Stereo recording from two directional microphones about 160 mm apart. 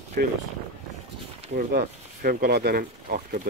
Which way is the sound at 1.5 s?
70° right (ahead or behind).